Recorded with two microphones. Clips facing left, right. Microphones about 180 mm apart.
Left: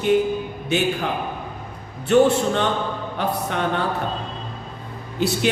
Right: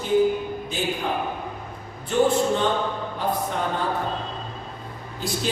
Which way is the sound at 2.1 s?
70° left (ahead or behind).